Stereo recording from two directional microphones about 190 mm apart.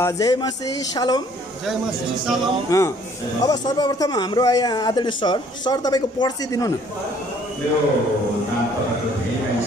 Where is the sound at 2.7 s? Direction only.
15° left (ahead or behind).